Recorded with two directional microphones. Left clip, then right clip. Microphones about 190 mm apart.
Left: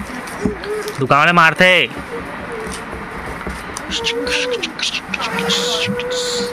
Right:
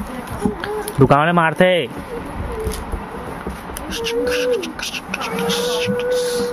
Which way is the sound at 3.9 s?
40° right (ahead or behind).